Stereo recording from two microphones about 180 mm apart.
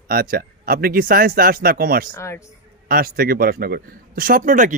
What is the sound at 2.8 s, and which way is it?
Speech, 55° right (ahead or behind).